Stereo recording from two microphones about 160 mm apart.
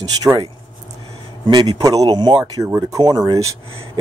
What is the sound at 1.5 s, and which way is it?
Speech, 25° right (ahead or behind).